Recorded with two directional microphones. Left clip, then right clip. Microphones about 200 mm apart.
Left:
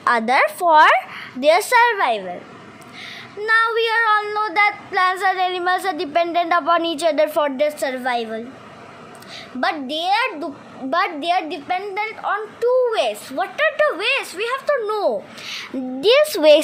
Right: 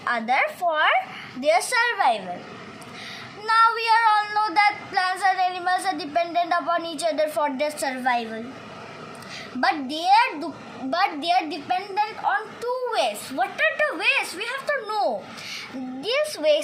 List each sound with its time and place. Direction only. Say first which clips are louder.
0.0 s a woman's voice: left 6 dB; 60° left (ahead or behind)
3.4 s a woman's voice: left 2 dB; 45° left (ahead or behind)
9.6 s a woman's voice: left 2 dB; 50° left (ahead or behind)